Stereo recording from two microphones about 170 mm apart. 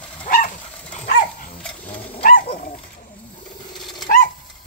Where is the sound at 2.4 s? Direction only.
50° left (ahead or behind).